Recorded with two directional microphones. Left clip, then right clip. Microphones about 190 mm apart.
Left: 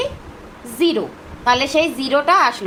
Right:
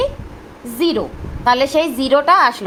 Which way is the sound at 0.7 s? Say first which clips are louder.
Even; 40° right (ahead or behind).